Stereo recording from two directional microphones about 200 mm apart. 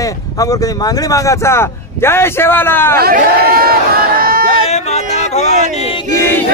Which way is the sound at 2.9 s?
50° right (ahead or behind).